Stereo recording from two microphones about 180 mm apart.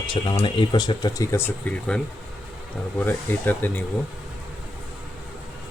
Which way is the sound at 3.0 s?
10° left (ahead or behind).